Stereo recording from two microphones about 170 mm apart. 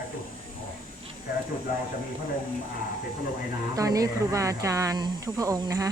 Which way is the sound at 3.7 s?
20° right (ahead or behind).